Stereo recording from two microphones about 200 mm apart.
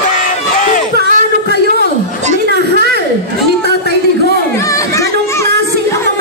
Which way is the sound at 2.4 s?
55° right (ahead or behind).